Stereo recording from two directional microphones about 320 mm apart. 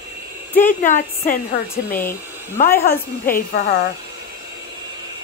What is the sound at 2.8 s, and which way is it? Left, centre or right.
Speech, left.